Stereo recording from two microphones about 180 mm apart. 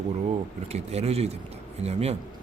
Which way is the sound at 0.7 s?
35° right (ahead or behind).